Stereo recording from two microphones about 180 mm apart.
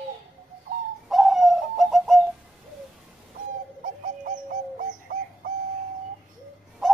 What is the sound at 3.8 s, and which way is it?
Bird, 45° right (ahead or behind).